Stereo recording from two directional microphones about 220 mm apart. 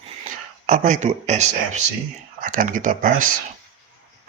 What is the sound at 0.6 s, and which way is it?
Speech, 35° right (ahead or behind).